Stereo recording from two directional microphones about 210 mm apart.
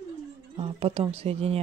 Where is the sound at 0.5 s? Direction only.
25° right (ahead or behind).